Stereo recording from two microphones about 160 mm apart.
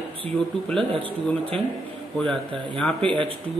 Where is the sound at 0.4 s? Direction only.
5° left (ahead or behind).